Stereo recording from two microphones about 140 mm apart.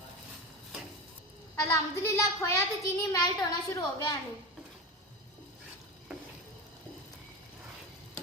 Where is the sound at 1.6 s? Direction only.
20° left (ahead or behind).